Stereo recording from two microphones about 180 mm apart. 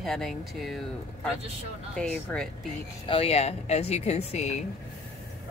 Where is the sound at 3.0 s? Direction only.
30° left (ahead or behind).